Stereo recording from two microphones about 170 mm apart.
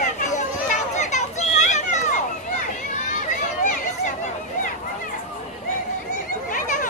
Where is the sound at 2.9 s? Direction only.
50° left (ahead or behind).